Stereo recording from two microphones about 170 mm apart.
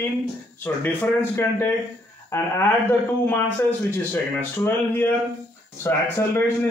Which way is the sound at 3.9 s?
10° left (ahead or behind).